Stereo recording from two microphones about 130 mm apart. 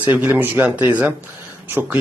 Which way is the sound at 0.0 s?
10° right (ahead or behind).